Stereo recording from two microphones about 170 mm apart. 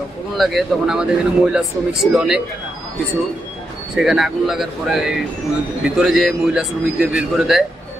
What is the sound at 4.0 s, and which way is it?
Speech, centre (ahead or behind).